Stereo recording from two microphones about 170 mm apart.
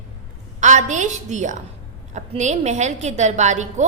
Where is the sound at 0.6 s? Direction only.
45° right (ahead or behind).